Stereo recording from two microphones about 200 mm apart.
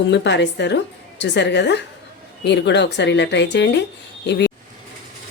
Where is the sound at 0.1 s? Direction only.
60° left (ahead or behind).